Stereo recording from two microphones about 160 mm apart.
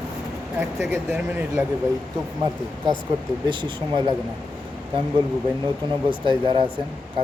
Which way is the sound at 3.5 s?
30° right (ahead or behind).